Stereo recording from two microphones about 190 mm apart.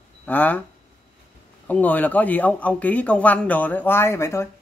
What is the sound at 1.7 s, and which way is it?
A man's voice, 10° left (ahead or behind).